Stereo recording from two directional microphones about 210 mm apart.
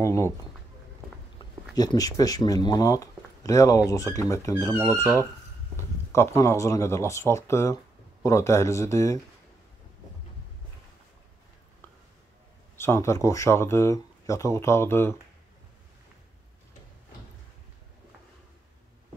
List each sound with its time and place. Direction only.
0.0 s speech: 15° left (ahead or behind)
1.8 s speech: 20° left (ahead or behind)
12.7 s speech: 10° left (ahead or behind)